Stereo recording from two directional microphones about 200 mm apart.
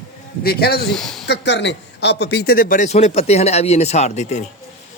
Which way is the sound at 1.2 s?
60° left (ahead or behind).